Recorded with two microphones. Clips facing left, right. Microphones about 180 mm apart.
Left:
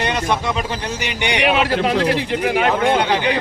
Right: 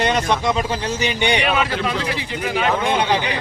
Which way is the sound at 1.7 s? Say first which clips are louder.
Left 6 dB; 60° left (ahead or behind).